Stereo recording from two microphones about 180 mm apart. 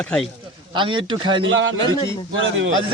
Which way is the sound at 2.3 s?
90° right.